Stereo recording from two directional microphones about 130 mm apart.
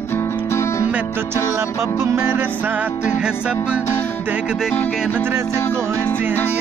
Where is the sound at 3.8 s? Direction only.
15° left (ahead or behind).